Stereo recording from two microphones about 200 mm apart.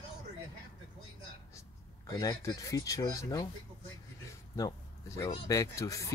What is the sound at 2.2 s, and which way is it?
Speech, 15° left (ahead or behind).